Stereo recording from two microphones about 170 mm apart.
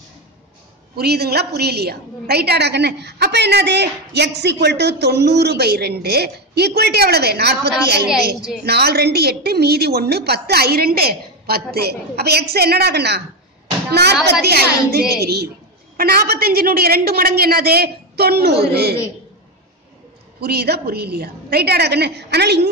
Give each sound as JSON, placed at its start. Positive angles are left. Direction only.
{"t": 0.9, "sound": "a woman's voice", "side_deg": -70}
{"t": 14.4, "sound": "a woman's voice", "side_deg": -70}
{"t": 20.3, "sound": "a woman's voice", "side_deg": -70}